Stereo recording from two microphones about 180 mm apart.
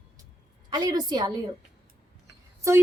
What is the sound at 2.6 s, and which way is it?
Speech, 15° right (ahead or behind).